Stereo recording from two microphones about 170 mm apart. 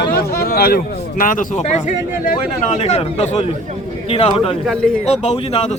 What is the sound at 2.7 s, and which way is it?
Speech, 40° left (ahead or behind).